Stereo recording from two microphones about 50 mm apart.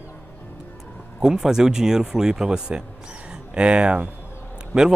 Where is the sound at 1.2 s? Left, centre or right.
Centre.